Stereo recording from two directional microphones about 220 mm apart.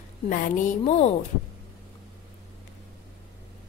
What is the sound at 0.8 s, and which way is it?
Speech, 30° left (ahead or behind).